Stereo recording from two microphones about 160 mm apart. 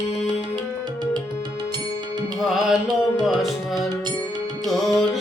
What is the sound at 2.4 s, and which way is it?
Music, centre (ahead or behind).